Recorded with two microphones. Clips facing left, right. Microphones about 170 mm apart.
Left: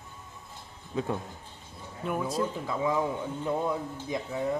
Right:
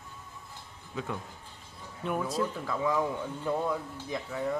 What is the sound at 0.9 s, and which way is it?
Speech, 30° left (ahead or behind).